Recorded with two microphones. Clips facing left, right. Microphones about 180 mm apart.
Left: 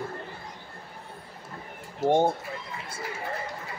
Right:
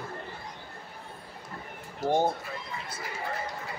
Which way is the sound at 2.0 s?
20° left (ahead or behind).